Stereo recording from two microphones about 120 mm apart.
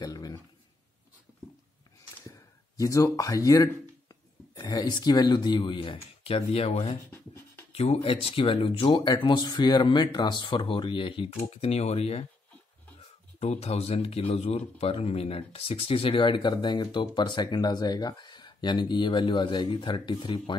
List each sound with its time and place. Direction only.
0.0 s a sound: 30° left (ahead or behind)
2.8 s speech: 25° left (ahead or behind); by 7.0 s 60° left (ahead or behind)
7.1 s a sound: 20° left (ahead or behind)
7.7 s speech: 60° left (ahead or behind)
11.3 s speech: 60° left (ahead or behind)
13.4 s speech: 65° left (ahead or behind); by 20.5 s 40° left (ahead or behind)